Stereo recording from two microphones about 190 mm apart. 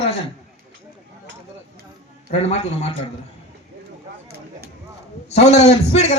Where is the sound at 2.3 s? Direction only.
35° left (ahead or behind).